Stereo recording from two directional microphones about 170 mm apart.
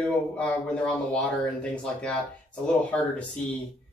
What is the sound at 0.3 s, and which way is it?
Speech, 5° left (ahead or behind).